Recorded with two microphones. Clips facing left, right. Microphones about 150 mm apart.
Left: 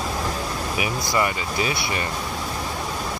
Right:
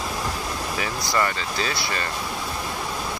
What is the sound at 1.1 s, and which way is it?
Speech, 15° left (ahead or behind).